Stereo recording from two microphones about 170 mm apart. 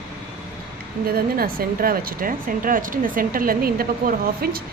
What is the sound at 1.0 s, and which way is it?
Speech, 60° right (ahead or behind).